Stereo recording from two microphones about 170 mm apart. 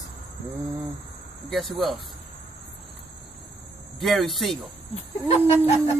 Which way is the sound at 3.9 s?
Centre (ahead or behind).